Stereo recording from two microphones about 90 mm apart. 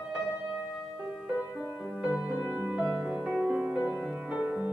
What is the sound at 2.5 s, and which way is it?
Music, 10° right (ahead or behind).